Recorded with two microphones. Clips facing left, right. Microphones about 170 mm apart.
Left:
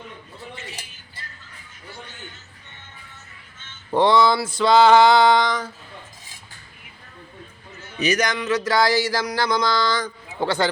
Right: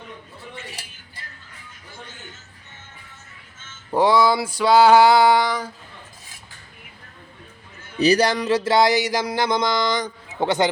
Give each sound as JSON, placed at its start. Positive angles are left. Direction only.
{"t": 3.9, "sound": "male singing", "side_deg": -10}
{"t": 7.9, "sound": "music", "side_deg": -35}